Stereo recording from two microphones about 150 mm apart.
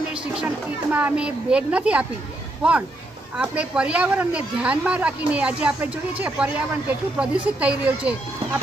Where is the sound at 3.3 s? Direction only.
10° right (ahead or behind).